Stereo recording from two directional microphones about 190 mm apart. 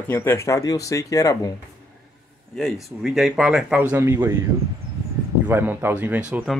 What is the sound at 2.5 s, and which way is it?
Speech, centre (ahead or behind).